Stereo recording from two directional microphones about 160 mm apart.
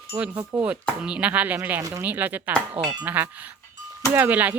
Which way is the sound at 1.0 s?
5° right (ahead or behind).